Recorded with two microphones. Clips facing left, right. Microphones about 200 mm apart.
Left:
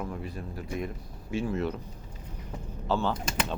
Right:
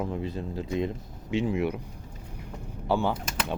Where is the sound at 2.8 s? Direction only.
15° right (ahead or behind).